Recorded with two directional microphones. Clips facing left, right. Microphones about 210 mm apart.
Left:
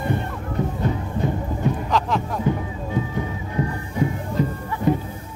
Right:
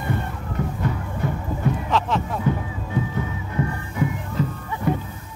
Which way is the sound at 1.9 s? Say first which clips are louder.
Even; centre (ahead or behind).